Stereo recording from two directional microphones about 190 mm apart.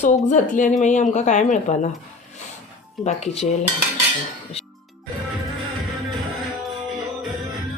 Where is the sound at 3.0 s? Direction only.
35° left (ahead or behind).